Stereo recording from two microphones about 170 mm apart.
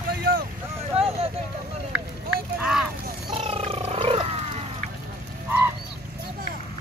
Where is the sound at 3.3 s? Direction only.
35° right (ahead or behind).